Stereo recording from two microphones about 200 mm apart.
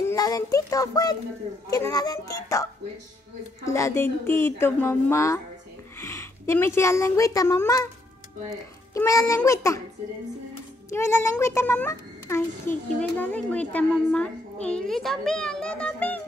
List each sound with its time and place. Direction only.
0.0 s a child's voice: 15° left (ahead or behind)
8.9 s a child's voice: 15° left (ahead or behind)
10.9 s a child's voice: 10° left (ahead or behind)